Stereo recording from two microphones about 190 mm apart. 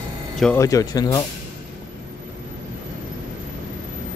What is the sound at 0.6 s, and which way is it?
Speech, 15° left (ahead or behind).